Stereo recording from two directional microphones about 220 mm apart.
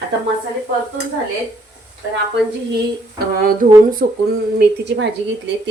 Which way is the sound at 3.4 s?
40° right (ahead or behind).